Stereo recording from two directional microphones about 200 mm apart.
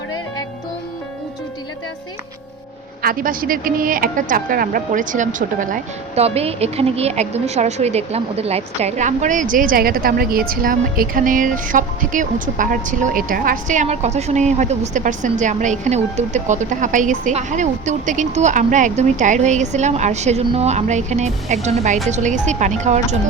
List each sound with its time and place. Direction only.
3.0 s a woman's voice: 45° right (ahead or behind)